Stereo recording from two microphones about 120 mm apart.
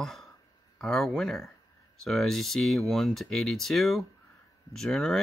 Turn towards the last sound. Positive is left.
turn(degrees=5)  # may be behind; listen again after turning